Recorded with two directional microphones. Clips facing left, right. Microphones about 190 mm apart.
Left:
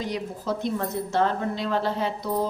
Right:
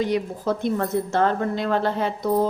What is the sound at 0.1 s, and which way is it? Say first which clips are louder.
A woman's voice: right 5 dB; 55° right (ahead or behind).